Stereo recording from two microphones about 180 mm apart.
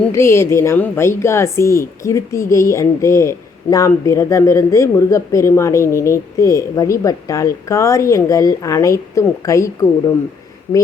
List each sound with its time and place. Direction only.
0.1 s a woman's voice: 15° left (ahead or behind)